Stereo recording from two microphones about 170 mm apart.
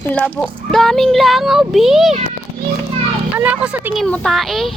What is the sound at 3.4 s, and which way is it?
Speech, 5° right (ahead or behind).